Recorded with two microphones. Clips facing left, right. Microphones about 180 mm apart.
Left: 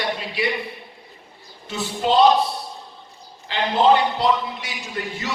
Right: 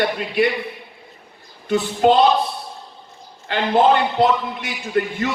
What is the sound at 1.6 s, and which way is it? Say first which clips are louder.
Speech: right 7 dB; 55° right (ahead or behind).